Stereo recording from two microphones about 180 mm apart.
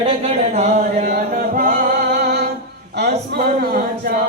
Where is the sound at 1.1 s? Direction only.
55° right (ahead or behind).